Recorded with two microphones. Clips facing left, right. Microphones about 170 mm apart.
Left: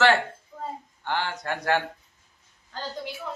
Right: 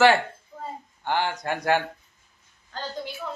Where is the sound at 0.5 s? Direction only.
10° right (ahead or behind).